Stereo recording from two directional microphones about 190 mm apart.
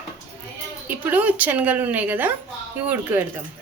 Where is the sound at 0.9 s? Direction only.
10° right (ahead or behind).